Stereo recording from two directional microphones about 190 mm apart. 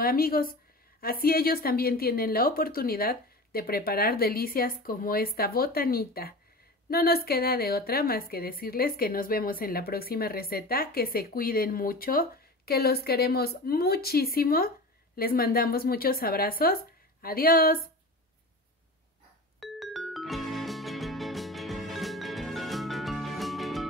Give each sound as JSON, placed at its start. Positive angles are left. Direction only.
{"t": 0.0, "sound": "a woman's voice", "side_deg": 50}
{"t": 19.6, "sound": "music", "side_deg": 0}